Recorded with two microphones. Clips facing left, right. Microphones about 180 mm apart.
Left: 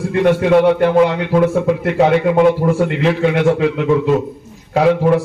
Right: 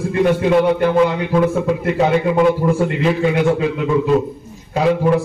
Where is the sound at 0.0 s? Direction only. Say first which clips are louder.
Left 2 dB; centre (ahead or behind).